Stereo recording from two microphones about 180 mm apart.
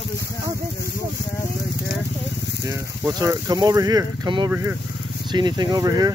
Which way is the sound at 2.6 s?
15° right (ahead or behind).